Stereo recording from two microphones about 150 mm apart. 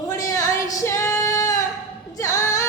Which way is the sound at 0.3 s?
20° left (ahead or behind).